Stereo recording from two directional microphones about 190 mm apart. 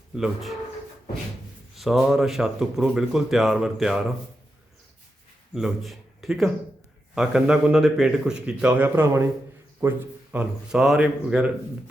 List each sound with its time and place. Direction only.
1.7 s speech: centre (ahead or behind)
5.5 s speech: centre (ahead or behind)
10.3 s speech: centre (ahead or behind)